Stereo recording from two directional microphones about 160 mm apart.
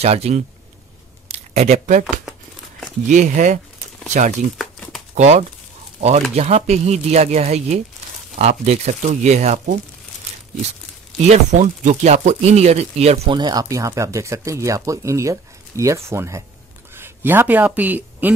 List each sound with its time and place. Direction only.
0.0 s speech: 40° right (ahead or behind)
3.1 s speech: 50° right (ahead or behind)
4.6 s crumpling: centre (ahead or behind)
5.1 s speech: 45° right (ahead or behind)
11.2 s speech: 45° right (ahead or behind)
13.4 s speech: 25° right (ahead or behind)